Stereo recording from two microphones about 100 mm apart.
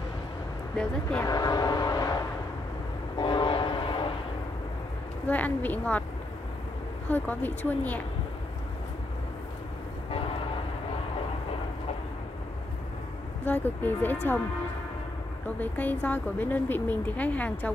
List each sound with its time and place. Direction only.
1.2 s vehicle: 40° left (ahead or behind)
3.2 s train: 50° left (ahead or behind)
5.2 s speech: 15° left (ahead or behind)
7.1 s speech: 15° left (ahead or behind)
13.5 s speech: 20° left (ahead or behind)
15.6 s speech: 15° left (ahead or behind)